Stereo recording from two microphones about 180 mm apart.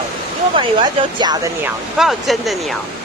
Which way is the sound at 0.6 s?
25° right (ahead or behind).